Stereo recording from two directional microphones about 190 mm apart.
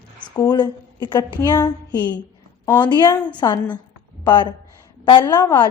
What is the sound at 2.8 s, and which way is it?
A woman's voice, 20° left (ahead or behind).